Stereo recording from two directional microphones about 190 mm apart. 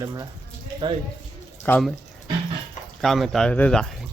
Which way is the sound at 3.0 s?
Centre (ahead or behind).